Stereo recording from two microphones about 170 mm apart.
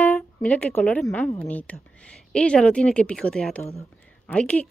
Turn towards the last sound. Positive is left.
turn(degrees=5)  # may be behind; listen again after turning